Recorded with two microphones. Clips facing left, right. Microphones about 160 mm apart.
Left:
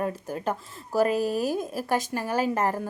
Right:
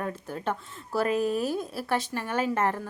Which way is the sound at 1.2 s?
35° left (ahead or behind).